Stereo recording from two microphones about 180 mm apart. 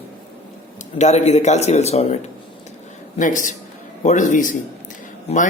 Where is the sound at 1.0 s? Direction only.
40° left (ahead or behind).